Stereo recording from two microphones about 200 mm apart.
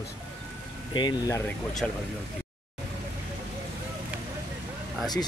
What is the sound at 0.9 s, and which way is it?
Speech, 20° left (ahead or behind).